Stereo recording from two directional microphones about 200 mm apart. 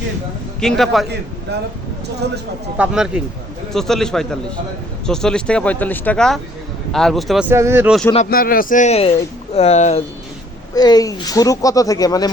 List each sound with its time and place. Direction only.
0.6 s speech: centre (ahead or behind)
2.7 s speech: 5° right (ahead or behind)
8.3 s speech: 45° left (ahead or behind)
10.8 s speech: 20° left (ahead or behind)